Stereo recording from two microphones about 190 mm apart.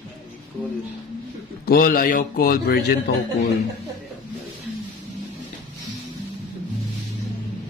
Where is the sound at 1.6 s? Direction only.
50° left (ahead or behind).